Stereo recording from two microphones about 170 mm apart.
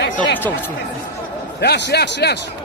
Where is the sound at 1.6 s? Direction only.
80° left.